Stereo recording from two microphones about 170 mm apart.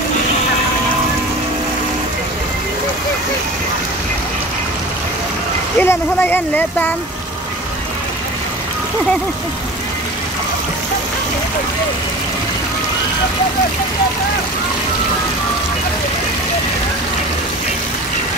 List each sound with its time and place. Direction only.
5.8 s speech: 10° left (ahead or behind)